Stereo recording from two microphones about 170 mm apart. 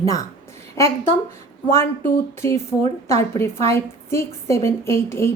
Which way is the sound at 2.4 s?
15° left (ahead or behind).